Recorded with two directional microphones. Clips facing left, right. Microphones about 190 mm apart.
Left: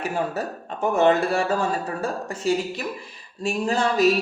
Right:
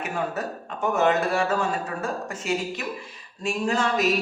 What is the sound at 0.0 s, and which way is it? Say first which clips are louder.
Speech: left 2 dB; 30° left (ahead or behind).